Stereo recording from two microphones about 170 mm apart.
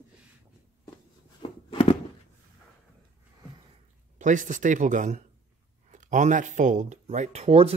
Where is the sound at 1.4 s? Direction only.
30° left (ahead or behind).